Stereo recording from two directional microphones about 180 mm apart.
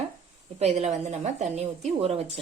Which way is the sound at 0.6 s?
35° right (ahead or behind).